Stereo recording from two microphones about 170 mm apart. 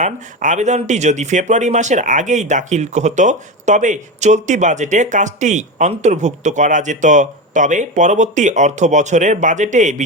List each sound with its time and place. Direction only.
0.0 s speech: 45° right (ahead or behind)